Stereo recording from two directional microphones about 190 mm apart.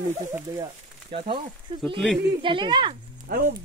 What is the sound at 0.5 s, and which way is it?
Speech, 25° right (ahead or behind).